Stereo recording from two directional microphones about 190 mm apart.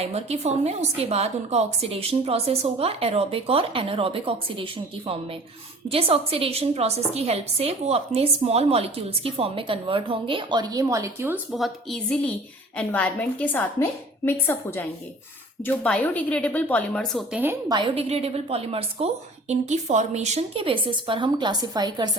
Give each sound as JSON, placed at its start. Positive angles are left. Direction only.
{"t": 0.0, "sound": "a woman's voice", "side_deg": -35}
{"t": 11.5, "sound": "a woman's voice", "side_deg": 0}
{"t": 17.4, "sound": "a woman's voice", "side_deg": -10}
{"t": 17.7, "sound": "a woman's voice", "side_deg": -30}